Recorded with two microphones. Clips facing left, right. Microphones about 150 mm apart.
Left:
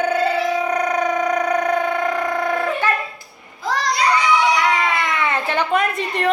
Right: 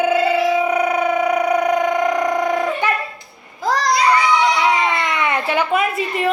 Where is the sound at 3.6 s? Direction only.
40° right (ahead or behind).